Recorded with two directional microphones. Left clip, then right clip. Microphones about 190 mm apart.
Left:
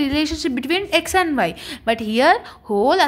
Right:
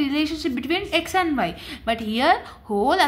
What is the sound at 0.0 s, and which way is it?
A woman's voice, 40° left (ahead or behind).